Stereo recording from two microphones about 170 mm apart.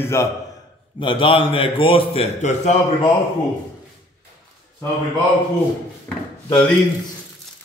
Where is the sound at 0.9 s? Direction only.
30° left (ahead or behind).